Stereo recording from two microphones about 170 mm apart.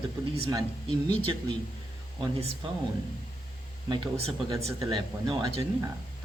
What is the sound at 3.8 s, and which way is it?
Speech, 30° right (ahead or behind).